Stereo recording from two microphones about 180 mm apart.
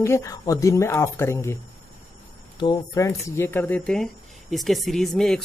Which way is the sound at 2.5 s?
20° left (ahead or behind).